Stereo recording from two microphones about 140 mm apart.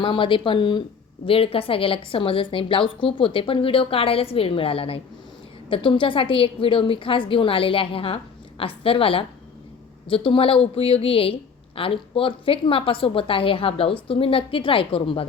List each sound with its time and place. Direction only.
0.0 s a woman's voice: 35° left (ahead or behind)